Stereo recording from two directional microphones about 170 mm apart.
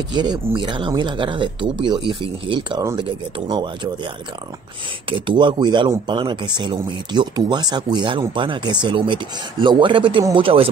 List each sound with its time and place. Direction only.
0.1 s speech: 25° right (ahead or behind)
5.1 s speech: 30° right (ahead or behind)